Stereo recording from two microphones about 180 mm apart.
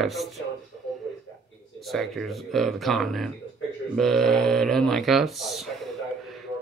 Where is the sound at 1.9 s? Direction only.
Centre (ahead or behind).